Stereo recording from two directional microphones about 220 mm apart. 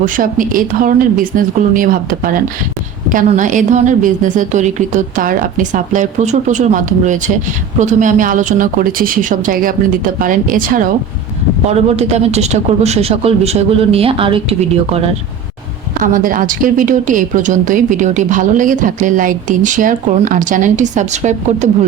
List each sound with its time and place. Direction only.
0.0 s a woman's voice: 40° right (ahead or behind)
16.0 s a woman's voice: 35° right (ahead or behind)